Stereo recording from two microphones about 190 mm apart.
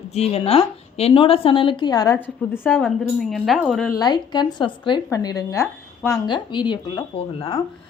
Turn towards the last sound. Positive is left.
turn(degrees=30)  # may be behind; listen again after turning